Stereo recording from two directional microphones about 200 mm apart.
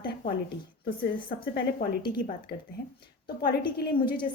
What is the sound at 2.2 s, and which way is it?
Speech, 45° left (ahead or behind).